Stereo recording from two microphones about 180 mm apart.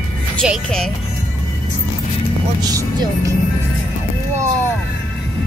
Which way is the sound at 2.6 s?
20° right (ahead or behind).